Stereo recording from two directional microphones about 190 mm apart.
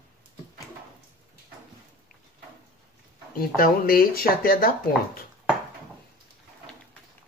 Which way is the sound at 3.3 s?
50° left (ahead or behind).